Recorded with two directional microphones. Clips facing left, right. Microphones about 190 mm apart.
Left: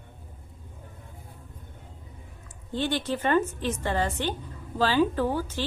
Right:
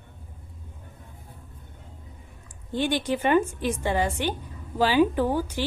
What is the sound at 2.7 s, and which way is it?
A woman's voice, 15° right (ahead or behind).